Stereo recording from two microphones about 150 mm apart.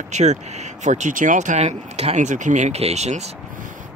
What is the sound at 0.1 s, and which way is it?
Speech, 50° right (ahead or behind).